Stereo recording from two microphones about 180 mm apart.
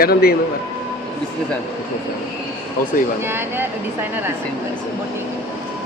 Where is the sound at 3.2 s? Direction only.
10° right (ahead or behind).